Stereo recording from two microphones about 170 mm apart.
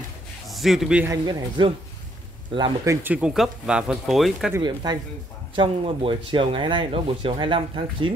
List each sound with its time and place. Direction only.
0.5 s a man's voice: centre (ahead or behind)
1.0 s speech: 20° right (ahead or behind); by 4.6 s centre (ahead or behind)
4.6 s speech: 25° right (ahead or behind)